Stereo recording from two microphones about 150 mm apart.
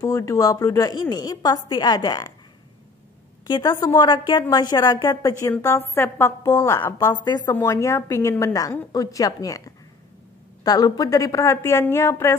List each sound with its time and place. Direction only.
0.0 s a woman's voice: 20° left (ahead or behind)
3.4 s a woman's voice: 30° left (ahead or behind)
10.6 s a woman's voice: 25° left (ahead or behind)